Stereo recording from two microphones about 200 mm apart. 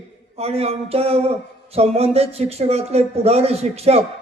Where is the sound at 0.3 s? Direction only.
30° right (ahead or behind).